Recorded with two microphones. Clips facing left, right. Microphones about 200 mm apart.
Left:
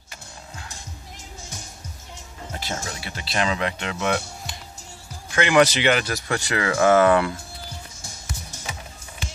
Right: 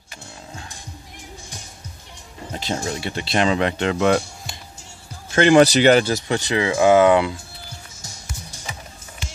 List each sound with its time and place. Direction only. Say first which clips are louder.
2.5 s speech: right 6 dB; 25° right (ahead or behind)